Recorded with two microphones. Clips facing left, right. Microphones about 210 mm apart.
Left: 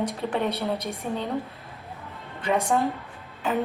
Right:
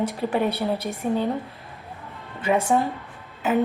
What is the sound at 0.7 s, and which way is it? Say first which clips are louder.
Speech: right 2 dB; 30° right (ahead or behind).